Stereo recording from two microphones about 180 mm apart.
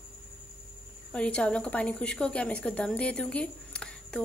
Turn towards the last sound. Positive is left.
turn(degrees=5)  # may be behind; listen again after turning